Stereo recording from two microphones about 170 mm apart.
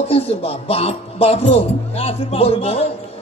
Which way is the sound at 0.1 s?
35° left (ahead or behind).